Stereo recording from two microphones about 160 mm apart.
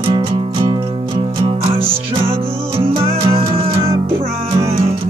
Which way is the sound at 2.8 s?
35° right (ahead or behind).